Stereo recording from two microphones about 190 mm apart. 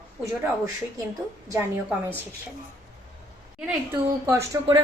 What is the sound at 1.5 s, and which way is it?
Speech, 15° right (ahead or behind).